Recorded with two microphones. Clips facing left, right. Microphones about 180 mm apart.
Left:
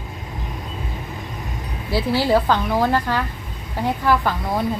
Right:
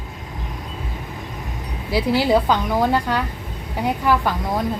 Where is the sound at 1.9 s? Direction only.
15° right (ahead or behind).